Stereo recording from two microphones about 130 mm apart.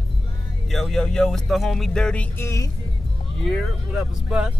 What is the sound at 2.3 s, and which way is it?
Speech, 25° left (ahead or behind).